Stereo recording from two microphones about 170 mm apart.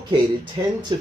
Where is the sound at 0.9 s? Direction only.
25° right (ahead or behind).